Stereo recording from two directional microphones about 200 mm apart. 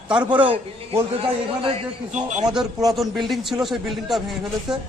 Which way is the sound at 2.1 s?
35° right (ahead or behind).